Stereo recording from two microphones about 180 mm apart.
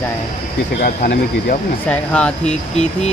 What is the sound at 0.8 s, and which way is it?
Speech, 55° left (ahead or behind).